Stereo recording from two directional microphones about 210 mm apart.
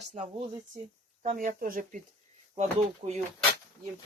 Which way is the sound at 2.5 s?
30° right (ahead or behind).